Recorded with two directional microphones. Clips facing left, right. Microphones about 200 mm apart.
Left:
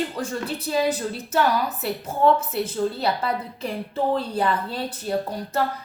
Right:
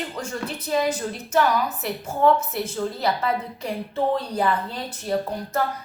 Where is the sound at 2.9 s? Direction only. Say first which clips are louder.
Right 1 dB; 30° left (ahead or behind).